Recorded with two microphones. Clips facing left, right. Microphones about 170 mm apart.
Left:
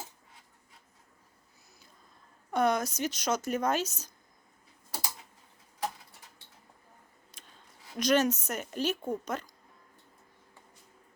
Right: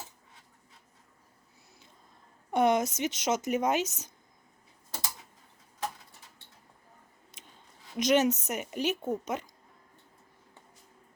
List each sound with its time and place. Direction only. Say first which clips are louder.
2.5 s speech: right 2 dB; 20° right (ahead or behind)
7.3 s a sound: right 2 dB; 20° right (ahead or behind)
7.9 s speech: right 1 dB; 20° right (ahead or behind)